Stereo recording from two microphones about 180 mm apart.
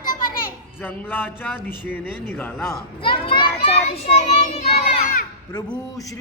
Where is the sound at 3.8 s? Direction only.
40° left (ahead or behind).